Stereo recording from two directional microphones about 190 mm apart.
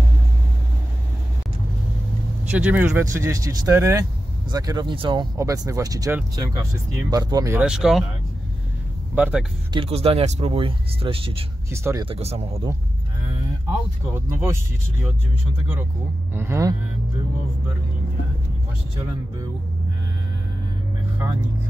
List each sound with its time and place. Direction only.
2.5 s speech: 10° right (ahead or behind)
7.6 s speech: 5° right (ahead or behind)
9.1 s speech: 5° right (ahead or behind)
9.7 s speech: 30° right (ahead or behind)
11.7 s speech: 15° right (ahead or behind)
12.1 s speech: 30° right (ahead or behind)
14.1 s speech: 15° right (ahead or behind)
16.3 s speech: 15° right (ahead or behind)